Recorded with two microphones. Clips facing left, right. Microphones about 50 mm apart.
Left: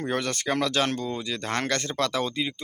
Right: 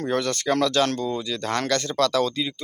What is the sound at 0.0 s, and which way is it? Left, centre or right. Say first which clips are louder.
Speech: right 3 dB; left.